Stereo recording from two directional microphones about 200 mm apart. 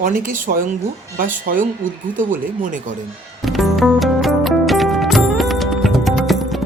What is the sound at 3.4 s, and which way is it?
Music, centre (ahead or behind).